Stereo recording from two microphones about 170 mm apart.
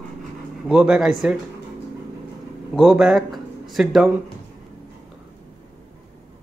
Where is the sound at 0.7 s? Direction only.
5° right (ahead or behind).